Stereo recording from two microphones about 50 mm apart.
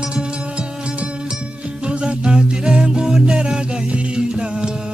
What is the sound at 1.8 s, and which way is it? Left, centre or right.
Music, centre.